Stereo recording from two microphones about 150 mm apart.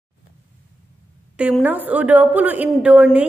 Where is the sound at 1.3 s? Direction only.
10° right (ahead or behind).